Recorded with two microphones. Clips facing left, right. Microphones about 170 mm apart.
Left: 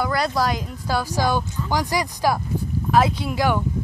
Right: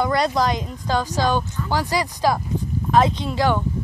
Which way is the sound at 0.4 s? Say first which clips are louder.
Right 1 dB; 5° left (ahead or behind).